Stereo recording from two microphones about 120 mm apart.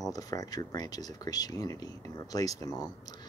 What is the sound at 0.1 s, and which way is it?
Speech, 30° left (ahead or behind).